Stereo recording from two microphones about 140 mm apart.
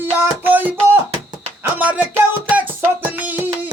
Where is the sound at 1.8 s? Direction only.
10° right (ahead or behind).